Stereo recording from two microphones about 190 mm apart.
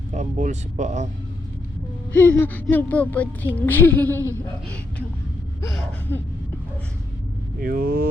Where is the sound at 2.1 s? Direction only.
10° left (ahead or behind).